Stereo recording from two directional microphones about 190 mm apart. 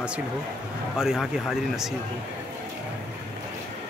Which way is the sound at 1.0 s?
Centre (ahead or behind).